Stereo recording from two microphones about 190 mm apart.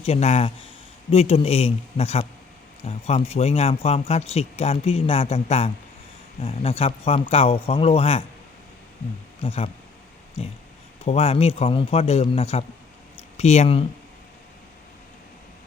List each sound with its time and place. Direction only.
0.0 s speech: 35° left (ahead or behind)
9.4 s speech: 30° left (ahead or behind)
11.0 s speech: 35° left (ahead or behind)